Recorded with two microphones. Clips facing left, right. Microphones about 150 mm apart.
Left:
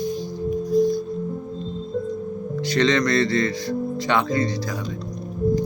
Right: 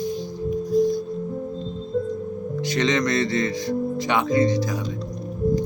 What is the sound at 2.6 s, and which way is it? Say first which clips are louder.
Speech: left 2 dB; 15° right (ahead or behind).